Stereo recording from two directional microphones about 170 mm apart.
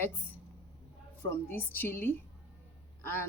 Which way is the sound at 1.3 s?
15° left (ahead or behind).